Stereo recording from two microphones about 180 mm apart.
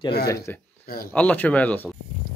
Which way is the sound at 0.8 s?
55° left (ahead or behind).